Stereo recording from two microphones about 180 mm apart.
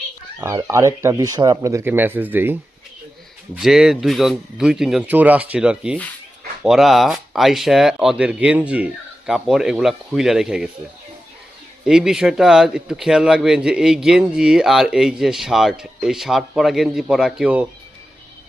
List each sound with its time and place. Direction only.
0.3 s speech: 15° right (ahead or behind)
11.9 s speech: 5° right (ahead or behind)